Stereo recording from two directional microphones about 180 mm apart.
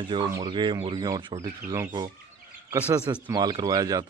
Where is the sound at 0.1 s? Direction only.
25° right (ahead or behind).